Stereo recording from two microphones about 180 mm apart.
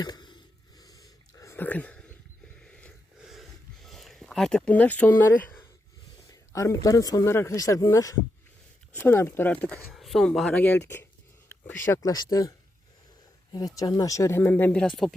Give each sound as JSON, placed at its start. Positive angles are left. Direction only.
{"t": 0.0, "sound": "a sound", "side_deg": 25}
{"t": 2.6, "sound": "snort", "side_deg": 5}
{"t": 3.8, "sound": "speech", "side_deg": 0}
{"t": 13.7, "sound": "speech", "side_deg": 20}